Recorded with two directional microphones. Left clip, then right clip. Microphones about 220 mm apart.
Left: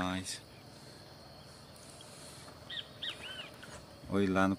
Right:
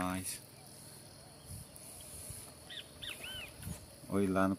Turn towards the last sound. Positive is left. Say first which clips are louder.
# left 2 dB
turn(degrees=5)  # may be behind; listen again after turning